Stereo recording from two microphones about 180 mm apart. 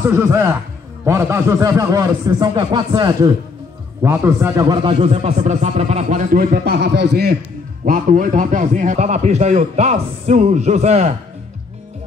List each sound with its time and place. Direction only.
0.1 s a man's voice: 15° right (ahead or behind); by 7.3 s 65° right (ahead or behind)
7.8 s a man's voice: 45° right (ahead or behind)